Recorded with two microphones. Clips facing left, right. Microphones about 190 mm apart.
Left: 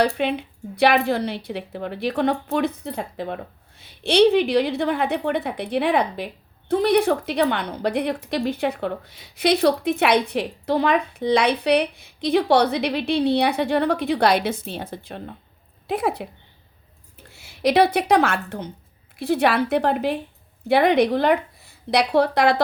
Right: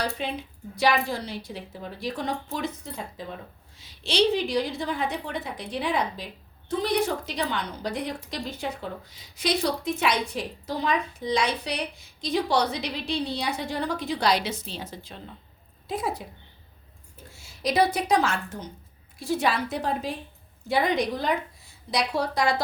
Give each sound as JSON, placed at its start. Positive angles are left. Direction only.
{"t": 0.0, "sound": "a woman's voice", "side_deg": 65}
{"t": 17.3, "sound": "a woman's voice", "side_deg": 65}